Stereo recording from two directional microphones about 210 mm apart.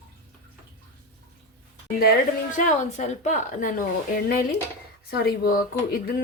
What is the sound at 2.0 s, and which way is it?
Speech, 50° left (ahead or behind).